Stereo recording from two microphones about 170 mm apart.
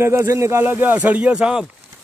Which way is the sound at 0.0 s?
15° right (ahead or behind).